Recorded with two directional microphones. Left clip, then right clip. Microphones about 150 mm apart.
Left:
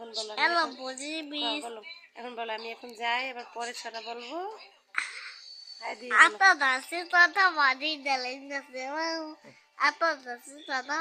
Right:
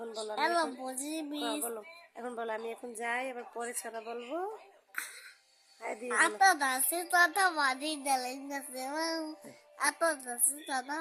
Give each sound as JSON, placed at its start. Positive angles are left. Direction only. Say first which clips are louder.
{"t": 0.0, "sound": "a woman's voice", "louder": "left 2 dB", "side_deg": -70}
{"t": 0.3, "sound": "a woman's voice", "louder": "left 4 dB", "side_deg": -35}
{"t": 1.6, "sound": "speech", "louder": "left 1 dB", "side_deg": -90}
{"t": 4.9, "sound": "music", "louder": "left 8 dB", "side_deg": -35}
{"t": 5.8, "sound": "speech", "louder": "left 1 dB", "side_deg": -90}
{"t": 6.1, "sound": "a woman's voice", "louder": "left 6 dB", "side_deg": -30}